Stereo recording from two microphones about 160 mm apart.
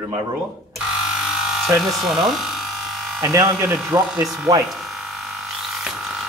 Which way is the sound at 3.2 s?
20° right (ahead or behind).